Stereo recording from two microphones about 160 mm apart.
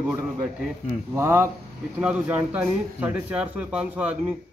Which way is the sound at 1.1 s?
15° right (ahead or behind).